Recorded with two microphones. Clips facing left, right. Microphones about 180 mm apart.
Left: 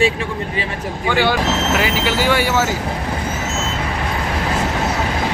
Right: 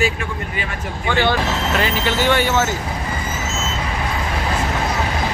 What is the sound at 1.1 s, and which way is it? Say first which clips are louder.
Speech: left 1 dB; 10° left (ahead or behind).